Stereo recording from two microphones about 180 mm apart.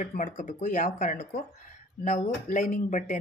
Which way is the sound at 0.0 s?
45° left (ahead or behind).